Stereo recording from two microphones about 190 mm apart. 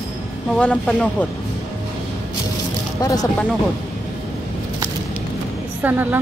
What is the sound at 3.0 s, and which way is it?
Speech, 20° left (ahead or behind).